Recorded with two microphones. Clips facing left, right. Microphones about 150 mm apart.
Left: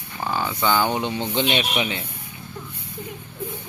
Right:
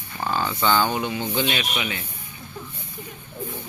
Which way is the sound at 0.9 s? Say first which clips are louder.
Left 1 dB; 25° left (ahead or behind).